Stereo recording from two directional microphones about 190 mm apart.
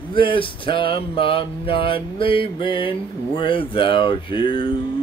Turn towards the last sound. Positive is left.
turn(degrees=25)  # may be behind; listen again after turning